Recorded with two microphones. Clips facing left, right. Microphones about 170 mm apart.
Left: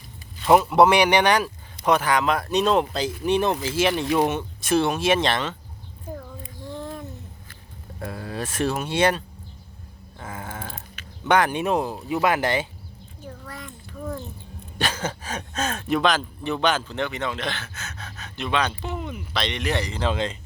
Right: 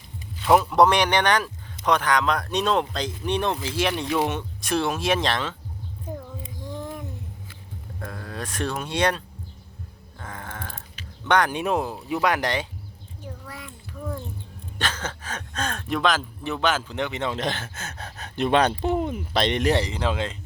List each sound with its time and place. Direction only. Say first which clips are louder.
0.4 s speech: left 2 dB; 5° left (ahead or behind)
6.1 s a sound: right 1 dB; 15° right (ahead or behind)
7.9 s speech: left 4 dB; 10° left (ahead or behind)
10.2 s a sound: left 2 dB; 10° left (ahead or behind)
11.3 s speech: left 1 dB; 5° left (ahead or behind)
13.2 s a sound: left 1 dB; 10° right (ahead or behind)
14.8 s speech: left 3 dB; 10° left (ahead or behind)
16.9 s speech: even; 20° right (ahead or behind)
17.4 s speech: right 2 dB; 45° right (ahead or behind)
19.9 s speech: left 1 dB; 10° right (ahead or behind)